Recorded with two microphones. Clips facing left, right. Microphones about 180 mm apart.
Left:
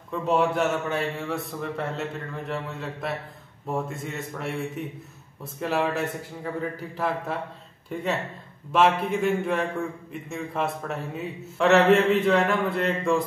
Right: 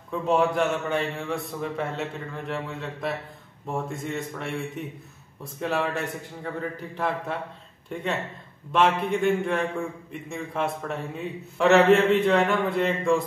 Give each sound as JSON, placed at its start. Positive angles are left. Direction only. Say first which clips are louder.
{"t": 0.1, "sound": "a man's voice", "louder": "even", "side_deg": 0}